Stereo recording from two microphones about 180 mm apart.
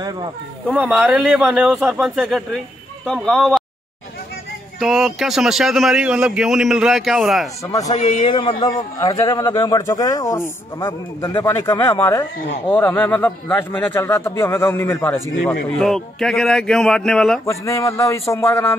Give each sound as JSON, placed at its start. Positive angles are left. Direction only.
{"t": 0.0, "sound": "speech", "side_deg": -25}
{"t": 0.7, "sound": "a man's voice", "side_deg": -5}
{"t": 4.7, "sound": "a man's voice", "side_deg": 0}
{"t": 7.6, "sound": "a man's voice", "side_deg": 20}
{"t": 7.9, "sound": "a man's voice", "side_deg": 40}
{"t": 8.3, "sound": "a man's voice", "side_deg": 25}
{"t": 15.8, "sound": "a man's voice", "side_deg": 0}
{"t": 17.5, "sound": "a man's voice", "side_deg": 15}